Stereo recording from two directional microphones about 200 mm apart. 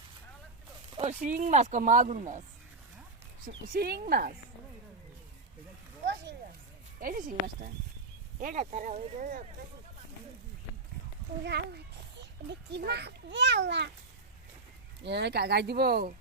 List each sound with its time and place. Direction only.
0.9 s speech: 35° right (ahead or behind)
3.7 s speech: 50° right (ahead or behind)
7.0 s speech: 45° right (ahead or behind)
12.1 s a child's voice: 60° right (ahead or behind)
15.0 s speech: 55° right (ahead or behind)